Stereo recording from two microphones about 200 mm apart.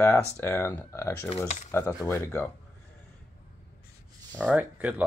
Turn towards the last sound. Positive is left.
turn(degrees=-10)  # may be behind; listen again after turning